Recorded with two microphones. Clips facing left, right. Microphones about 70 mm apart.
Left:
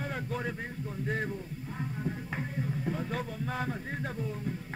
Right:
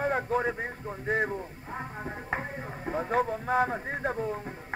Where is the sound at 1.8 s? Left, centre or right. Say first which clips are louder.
Left 2 dB; right.